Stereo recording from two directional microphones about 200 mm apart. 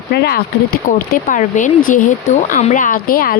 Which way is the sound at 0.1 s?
50° left (ahead or behind).